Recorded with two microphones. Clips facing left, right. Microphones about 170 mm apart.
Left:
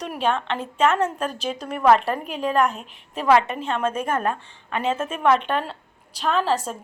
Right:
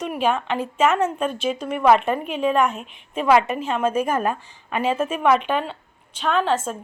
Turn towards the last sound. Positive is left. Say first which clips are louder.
# right 1 dB
turn(degrees=0)  # may be behind; listen again after turning